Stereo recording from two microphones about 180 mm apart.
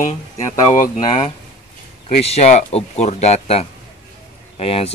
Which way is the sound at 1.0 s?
25° left (ahead or behind).